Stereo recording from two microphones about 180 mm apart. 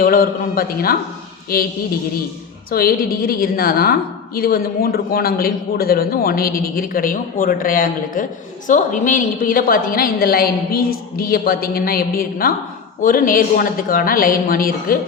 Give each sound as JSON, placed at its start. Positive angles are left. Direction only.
{"t": 0.0, "sound": "a man's voice", "side_deg": 55}